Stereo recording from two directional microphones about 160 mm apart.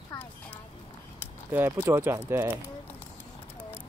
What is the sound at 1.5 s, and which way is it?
Speech, 15° right (ahead or behind).